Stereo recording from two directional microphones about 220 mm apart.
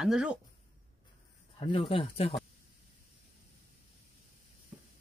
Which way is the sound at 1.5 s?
25° left (ahead or behind).